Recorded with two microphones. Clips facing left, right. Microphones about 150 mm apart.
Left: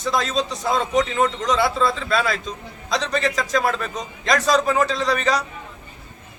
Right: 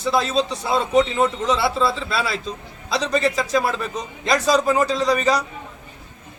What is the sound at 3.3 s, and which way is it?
Speech, 5° right (ahead or behind).